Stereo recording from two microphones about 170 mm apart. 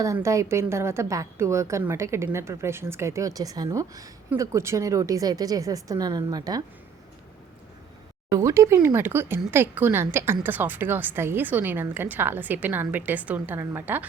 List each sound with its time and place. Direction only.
0.0 s a woman's voice: 20° right (ahead or behind)
8.3 s a woman's voice: 20° right (ahead or behind)